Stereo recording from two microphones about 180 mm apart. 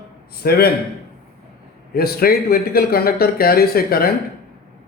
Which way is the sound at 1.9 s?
60° left (ahead or behind).